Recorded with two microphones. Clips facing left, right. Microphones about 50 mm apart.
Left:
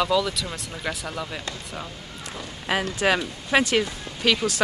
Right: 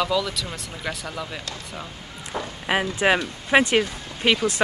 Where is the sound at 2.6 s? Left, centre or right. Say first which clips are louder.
Right 2 dB; centre.